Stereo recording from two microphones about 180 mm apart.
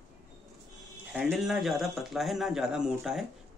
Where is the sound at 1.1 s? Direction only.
Centre (ahead or behind).